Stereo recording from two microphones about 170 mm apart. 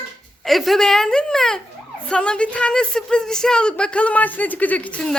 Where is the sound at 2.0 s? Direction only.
5° left (ahead or behind).